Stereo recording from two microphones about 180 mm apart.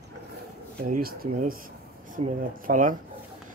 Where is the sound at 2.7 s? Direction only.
45° right (ahead or behind).